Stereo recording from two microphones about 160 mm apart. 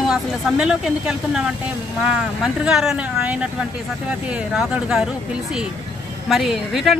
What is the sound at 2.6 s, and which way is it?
A woman's voice, 5° right (ahead or behind).